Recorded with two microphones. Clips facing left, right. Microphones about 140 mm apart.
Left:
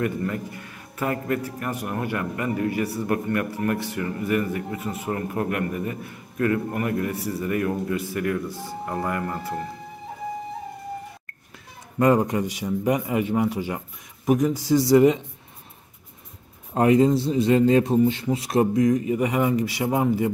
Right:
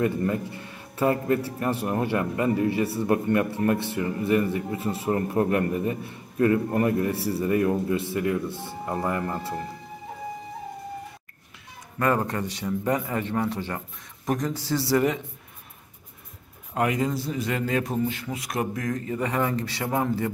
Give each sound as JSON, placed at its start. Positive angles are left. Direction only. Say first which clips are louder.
{"t": 0.0, "sound": "a man's voice", "louder": "right 2 dB", "side_deg": -25}
{"t": 12.0, "sound": "a man's voice", "louder": "left 5 dB", "side_deg": 15}
{"t": 16.7, "sound": "a man's voice", "louder": "left 7 dB", "side_deg": 30}
{"t": 18.9, "sound": "a man's voice", "louder": "left 6 dB", "side_deg": 15}